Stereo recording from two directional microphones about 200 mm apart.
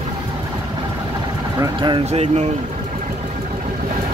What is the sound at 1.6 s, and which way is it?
Speech, 25° right (ahead or behind).